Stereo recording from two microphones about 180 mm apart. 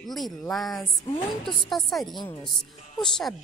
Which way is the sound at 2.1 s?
25° left (ahead or behind).